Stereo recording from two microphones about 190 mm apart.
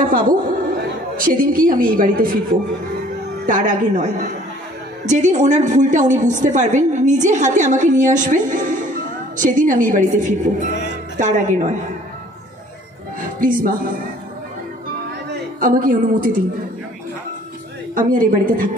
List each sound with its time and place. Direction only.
0.0 s a woman's voice: 45° right (ahead or behind)
3.4 s a woman's voice: 45° right (ahead or behind)
13.2 s speech: 45° right (ahead or behind)
15.6 s a woman's voice: 45° right (ahead or behind)
17.9 s a woman's voice: 45° right (ahead or behind)